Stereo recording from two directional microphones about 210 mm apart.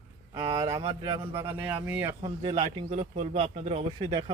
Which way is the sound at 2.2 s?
25° right (ahead or behind).